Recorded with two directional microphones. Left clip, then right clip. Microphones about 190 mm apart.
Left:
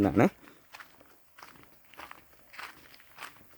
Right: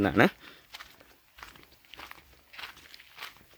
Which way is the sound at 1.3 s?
15° right (ahead or behind).